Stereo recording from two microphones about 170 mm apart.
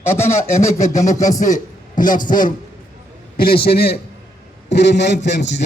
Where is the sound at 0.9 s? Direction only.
45° left (ahead or behind).